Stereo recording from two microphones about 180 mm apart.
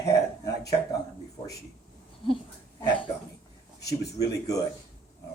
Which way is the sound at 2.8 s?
25° left (ahead or behind).